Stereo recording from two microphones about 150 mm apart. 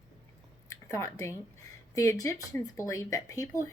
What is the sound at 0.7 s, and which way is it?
Speech, 20° left (ahead or behind).